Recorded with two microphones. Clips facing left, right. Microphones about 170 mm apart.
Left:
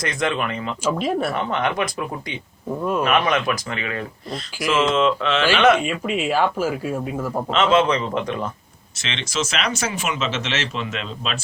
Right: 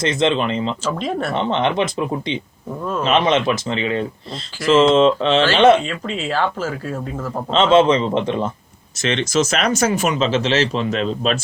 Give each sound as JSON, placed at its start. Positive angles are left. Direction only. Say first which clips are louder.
{"t": 0.0, "sound": "speech", "louder": "right 5 dB", "side_deg": -25}
{"t": 0.9, "sound": "speech", "louder": "left 6 dB", "side_deg": 5}
{"t": 1.3, "sound": "speech", "louder": "right 4 dB", "side_deg": -25}
{"t": 5.8, "sound": "speech", "louder": "left 2 dB", "side_deg": 10}
{"t": 7.5, "sound": "speech", "louder": "right 5 dB", "side_deg": -30}
{"t": 9.0, "sound": "speech", "louder": "right 8 dB", "side_deg": -45}